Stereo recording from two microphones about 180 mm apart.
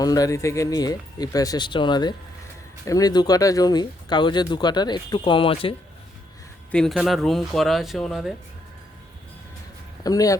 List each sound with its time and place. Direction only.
0.0 s speech: 20° left (ahead or behind)
6.7 s speech: 5° left (ahead or behind)
10.0 s speech: 20° left (ahead or behind)